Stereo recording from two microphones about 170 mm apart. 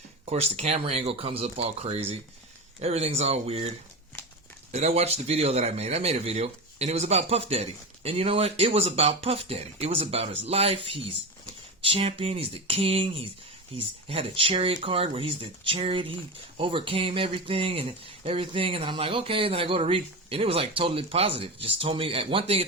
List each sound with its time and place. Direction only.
0.3 s speech: 40° right (ahead or behind)
4.7 s speech: 40° right (ahead or behind)